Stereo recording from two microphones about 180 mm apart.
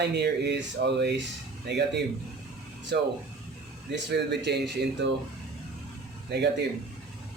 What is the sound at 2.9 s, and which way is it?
Speech, 65° right (ahead or behind).